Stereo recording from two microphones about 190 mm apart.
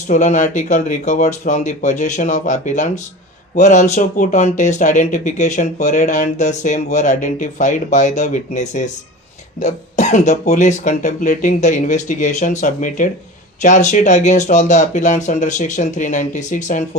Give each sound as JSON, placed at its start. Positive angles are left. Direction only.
{"t": 0.1, "sound": "speech", "side_deg": 40}